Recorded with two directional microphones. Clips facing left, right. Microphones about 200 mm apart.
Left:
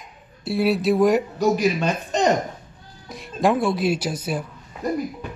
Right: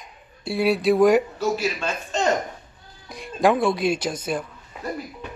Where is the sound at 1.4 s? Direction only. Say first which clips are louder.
Left 5 dB; 15° left (ahead or behind).